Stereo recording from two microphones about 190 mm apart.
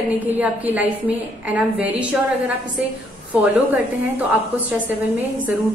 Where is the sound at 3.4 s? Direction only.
10° right (ahead or behind).